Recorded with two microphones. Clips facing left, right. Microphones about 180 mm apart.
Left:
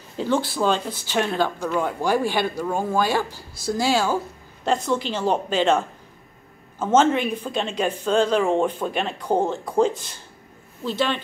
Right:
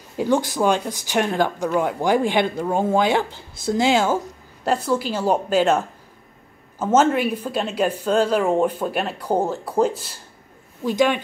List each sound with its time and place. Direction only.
0.2 s speech: 15° right (ahead or behind)
4.8 s speech: 10° right (ahead or behind)